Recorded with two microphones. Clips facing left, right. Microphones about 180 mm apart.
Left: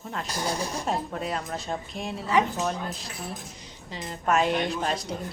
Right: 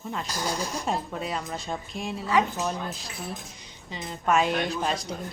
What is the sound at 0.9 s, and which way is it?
Speech, centre (ahead or behind).